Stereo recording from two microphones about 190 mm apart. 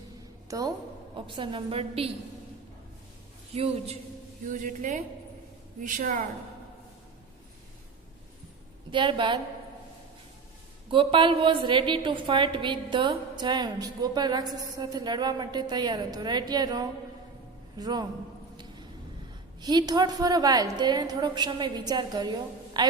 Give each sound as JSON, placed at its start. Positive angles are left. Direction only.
{"t": 1.1, "sound": "a woman's voice", "side_deg": -25}
{"t": 3.5, "sound": "a man's voice", "side_deg": -35}
{"t": 4.4, "sound": "a woman's voice", "side_deg": -45}
{"t": 8.9, "sound": "a woman's voice", "side_deg": -25}
{"t": 10.8, "sound": "a woman's voice", "side_deg": -25}
{"t": 19.6, "sound": "a woman's voice", "side_deg": -20}